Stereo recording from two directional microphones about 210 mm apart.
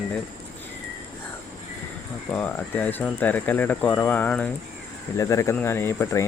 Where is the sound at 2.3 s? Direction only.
5° left (ahead or behind).